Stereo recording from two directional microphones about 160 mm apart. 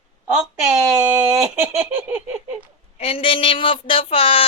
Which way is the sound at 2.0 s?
10° right (ahead or behind).